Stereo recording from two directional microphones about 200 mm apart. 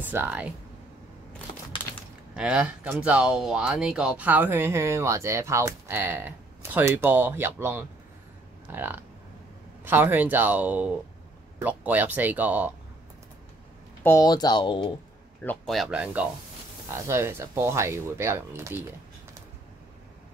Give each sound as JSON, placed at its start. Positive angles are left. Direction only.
{"t": 0.0, "sound": "speech", "side_deg": -10}
{"t": 2.3, "sound": "speech", "side_deg": -5}
{"t": 14.0, "sound": "speech", "side_deg": 15}
{"t": 15.4, "sound": "speech", "side_deg": 5}